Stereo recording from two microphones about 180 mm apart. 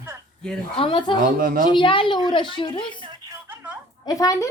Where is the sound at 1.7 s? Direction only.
30° left (ahead or behind).